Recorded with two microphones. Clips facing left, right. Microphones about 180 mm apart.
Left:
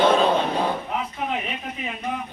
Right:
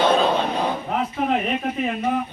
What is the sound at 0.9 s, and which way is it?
Speech, 45° right (ahead or behind).